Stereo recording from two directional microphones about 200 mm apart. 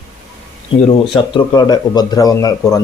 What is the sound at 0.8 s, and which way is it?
Speech, 25° left (ahead or behind).